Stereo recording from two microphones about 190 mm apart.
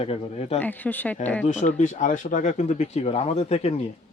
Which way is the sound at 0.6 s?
10° left (ahead or behind).